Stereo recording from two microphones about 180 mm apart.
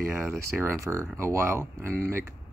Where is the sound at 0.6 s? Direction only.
15° right (ahead or behind).